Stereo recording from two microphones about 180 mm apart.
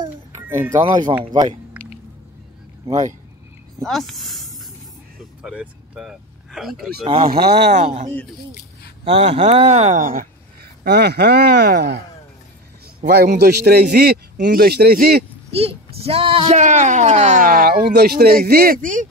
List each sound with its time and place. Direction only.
0.5 s speech: 15° right (ahead or behind)
0.7 s speech: 25° right (ahead or behind)
3.8 s speech: centre (ahead or behind)
5.4 s vehicle: 5° right (ahead or behind)
7.1 s speech: 30° right (ahead or behind)
8.1 s speech: 10° left (ahead or behind)
9.0 s speech: 35° right (ahead or behind)
10.8 s speech: 65° right (ahead or behind)
13.0 s speech: 60° right (ahead or behind)
15.5 s speech: 35° right (ahead or behind)